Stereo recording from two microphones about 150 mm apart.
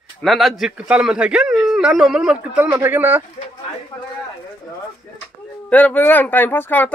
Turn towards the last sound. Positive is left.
turn(degrees=10)  # may be behind; listen again after turning